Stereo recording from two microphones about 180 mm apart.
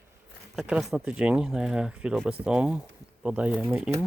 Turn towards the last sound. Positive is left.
turn(degrees=-5)  # may be behind; listen again after turning